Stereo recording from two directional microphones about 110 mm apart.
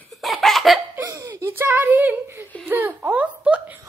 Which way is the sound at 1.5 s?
20° right (ahead or behind).